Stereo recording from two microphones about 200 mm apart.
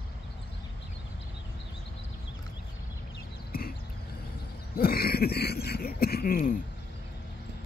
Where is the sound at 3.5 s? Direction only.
50° left (ahead or behind).